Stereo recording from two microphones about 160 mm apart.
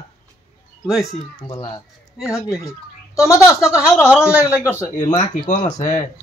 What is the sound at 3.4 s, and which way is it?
Speech, 5° right (ahead or behind).